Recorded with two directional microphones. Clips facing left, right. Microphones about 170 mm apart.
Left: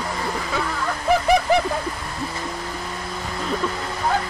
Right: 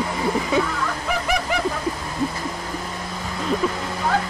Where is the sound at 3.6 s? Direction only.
10° right (ahead or behind).